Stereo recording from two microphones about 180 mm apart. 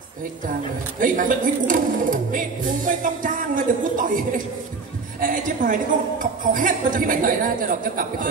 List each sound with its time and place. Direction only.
0.9 s a woman's voice: 50° right (ahead or behind)
5.2 s a woman's voice: 50° right (ahead or behind)